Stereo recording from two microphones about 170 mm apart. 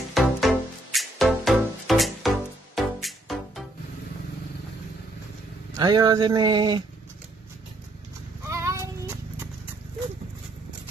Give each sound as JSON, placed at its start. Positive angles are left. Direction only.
{"t": 0.1, "sound": "music", "side_deg": 0}
{"t": 5.8, "sound": "a sound", "side_deg": -25}
{"t": 8.5, "sound": "child singing", "side_deg": -15}